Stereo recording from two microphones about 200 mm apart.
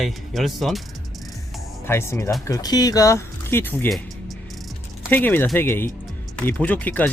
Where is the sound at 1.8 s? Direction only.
10° left (ahead or behind).